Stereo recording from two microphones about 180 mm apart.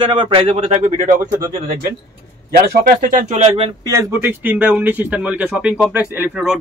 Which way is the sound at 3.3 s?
35° right (ahead or behind).